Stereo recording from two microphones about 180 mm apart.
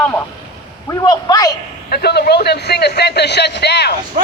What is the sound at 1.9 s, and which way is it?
A man's voice, 60° left (ahead or behind).